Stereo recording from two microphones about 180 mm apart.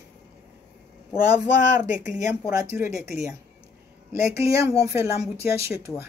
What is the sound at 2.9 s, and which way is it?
Speech, 5° right (ahead or behind).